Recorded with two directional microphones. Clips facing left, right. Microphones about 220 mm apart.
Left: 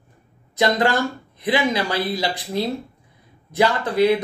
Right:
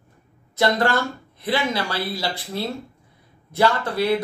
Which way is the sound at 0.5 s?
15° left (ahead or behind).